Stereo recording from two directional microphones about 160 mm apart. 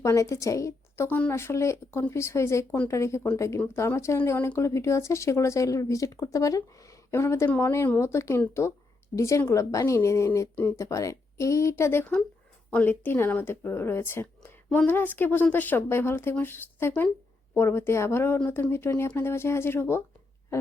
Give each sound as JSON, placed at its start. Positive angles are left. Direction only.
{"t": 0.0, "sound": "a woman's voice", "side_deg": 20}